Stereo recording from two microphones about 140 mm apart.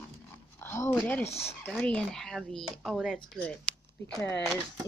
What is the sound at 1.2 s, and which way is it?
Speech, 45° left (ahead or behind).